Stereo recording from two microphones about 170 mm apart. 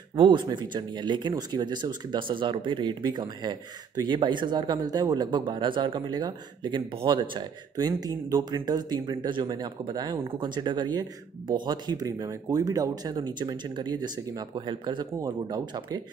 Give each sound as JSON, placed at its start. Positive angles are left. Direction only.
{"t": 0.1, "sound": "speech", "side_deg": -30}